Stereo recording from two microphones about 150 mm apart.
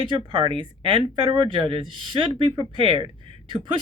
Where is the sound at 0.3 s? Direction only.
35° right (ahead or behind).